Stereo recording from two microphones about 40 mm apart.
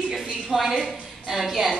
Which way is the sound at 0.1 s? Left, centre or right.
Centre.